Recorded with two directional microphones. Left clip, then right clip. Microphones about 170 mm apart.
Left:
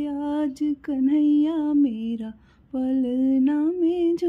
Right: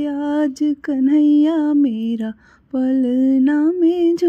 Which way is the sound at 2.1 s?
30° right (ahead or behind).